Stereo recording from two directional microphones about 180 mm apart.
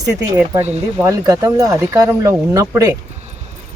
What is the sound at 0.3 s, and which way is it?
Speech, 10° right (ahead or behind).